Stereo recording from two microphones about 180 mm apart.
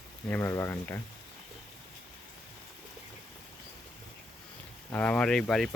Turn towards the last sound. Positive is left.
turn(degrees=0)  # may be behind; listen again after turning